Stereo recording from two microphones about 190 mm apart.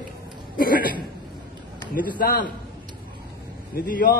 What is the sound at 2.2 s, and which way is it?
Speech, 50° left (ahead or behind).